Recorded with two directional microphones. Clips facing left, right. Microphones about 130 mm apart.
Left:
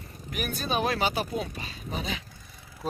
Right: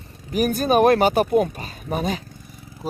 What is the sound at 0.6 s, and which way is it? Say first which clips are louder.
Speech: right 11 dB; 55° right (ahead or behind).